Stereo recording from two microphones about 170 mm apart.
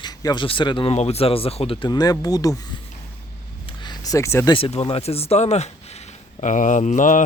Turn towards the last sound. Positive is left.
turn(degrees=50)  # may be behind; listen again after turning